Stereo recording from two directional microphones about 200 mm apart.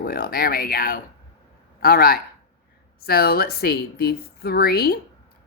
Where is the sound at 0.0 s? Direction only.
45° left (ahead or behind).